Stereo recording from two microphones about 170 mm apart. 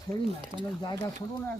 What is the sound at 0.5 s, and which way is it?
Speech, 40° right (ahead or behind).